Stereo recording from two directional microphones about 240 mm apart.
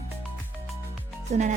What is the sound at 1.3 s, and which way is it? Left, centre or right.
Speech, right.